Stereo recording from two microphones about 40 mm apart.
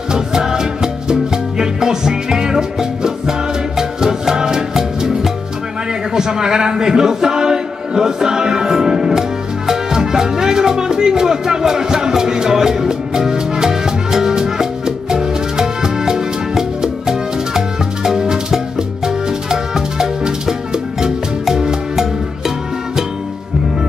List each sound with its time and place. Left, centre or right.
0.1 s music: centre
6.1 s a sound: centre
9.7 s music: centre